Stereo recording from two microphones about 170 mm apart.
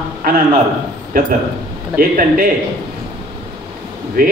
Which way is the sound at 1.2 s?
60° right (ahead or behind).